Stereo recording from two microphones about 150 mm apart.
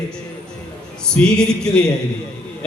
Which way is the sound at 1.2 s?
10° left (ahead or behind).